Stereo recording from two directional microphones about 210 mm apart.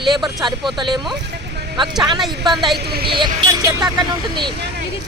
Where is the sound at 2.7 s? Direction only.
50° right (ahead or behind).